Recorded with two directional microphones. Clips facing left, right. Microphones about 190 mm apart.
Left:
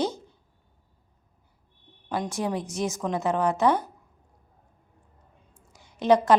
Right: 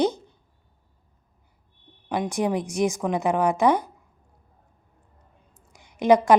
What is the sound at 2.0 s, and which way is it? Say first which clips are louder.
A woman's voice: right 4 dB; 15° right (ahead or behind).